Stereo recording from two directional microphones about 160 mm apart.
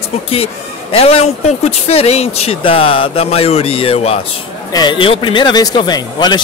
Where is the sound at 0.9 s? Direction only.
40° left (ahead or behind).